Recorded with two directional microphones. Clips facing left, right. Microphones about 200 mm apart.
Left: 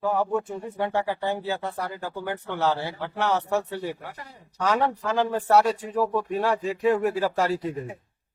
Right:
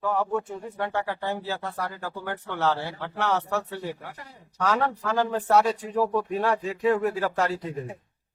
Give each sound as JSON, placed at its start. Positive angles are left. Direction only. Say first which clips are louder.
{"t": 0.0, "sound": "a man's voice", "louder": "left 2 dB", "side_deg": 10}
{"t": 4.6, "sound": "a man's voice", "louder": "left 1 dB", "side_deg": 15}